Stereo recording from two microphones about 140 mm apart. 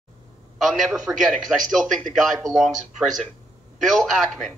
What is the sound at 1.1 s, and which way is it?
Speech, 5° right (ahead or behind).